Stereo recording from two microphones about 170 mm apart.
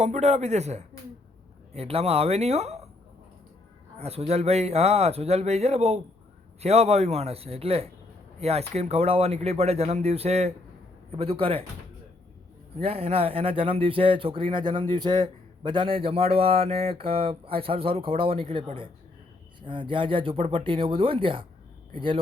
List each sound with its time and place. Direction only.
0.0 s speech: 45° right (ahead or behind)
3.9 s speech: 40° right (ahead or behind)
12.7 s speech: 35° right (ahead or behind)